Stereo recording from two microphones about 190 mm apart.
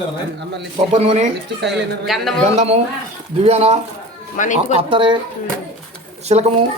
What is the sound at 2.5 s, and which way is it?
Speech, 35° right (ahead or behind).